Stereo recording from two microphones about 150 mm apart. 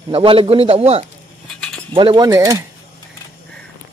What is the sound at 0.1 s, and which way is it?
A man's voice, 35° right (ahead or behind).